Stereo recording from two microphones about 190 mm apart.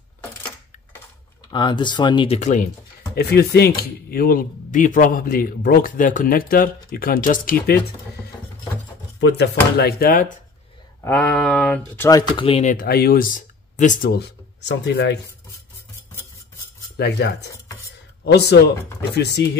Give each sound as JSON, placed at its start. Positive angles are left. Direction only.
{"t": 1.5, "sound": "speech", "side_deg": 25}
{"t": 3.2, "sound": "speech", "side_deg": 60}
{"t": 9.2, "sound": "speech", "side_deg": 60}
{"t": 11.0, "sound": "a sound", "side_deg": 10}
{"t": 12.1, "sound": "speech", "side_deg": 20}
{"t": 12.4, "sound": "speech", "side_deg": 30}
{"t": 12.7, "sound": "speech", "side_deg": 55}
{"t": 14.1, "sound": "speech", "side_deg": 60}
{"t": 16.9, "sound": "speech", "side_deg": 60}